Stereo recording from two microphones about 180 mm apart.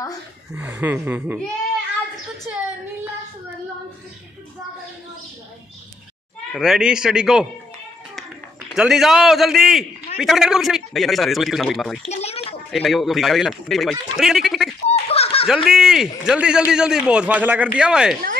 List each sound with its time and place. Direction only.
0.5 s speech: 10° right (ahead or behind)
2.5 s speech: 10° right (ahead or behind)
6.5 s a man's voice: centre (ahead or behind)
8.7 s a man's voice: 5° right (ahead or behind)
12.1 s a child's voice: 35° left (ahead or behind)
12.7 s a man's voice: centre (ahead or behind)
14.9 s giggle: 35° left (ahead or behind)
15.4 s a man's voice: 5° right (ahead or behind)